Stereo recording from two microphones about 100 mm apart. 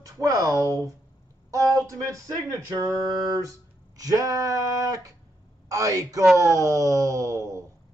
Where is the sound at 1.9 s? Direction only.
35° right (ahead or behind).